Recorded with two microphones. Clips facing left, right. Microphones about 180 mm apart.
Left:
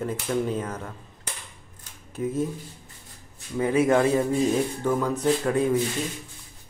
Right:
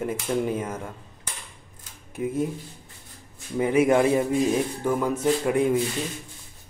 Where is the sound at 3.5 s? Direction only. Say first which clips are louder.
Right 1 dB; 15° right (ahead or behind).